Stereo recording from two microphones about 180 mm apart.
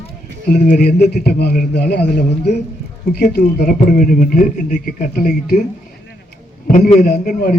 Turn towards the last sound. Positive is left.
turn(degrees=50)  # may be behind; listen again after turning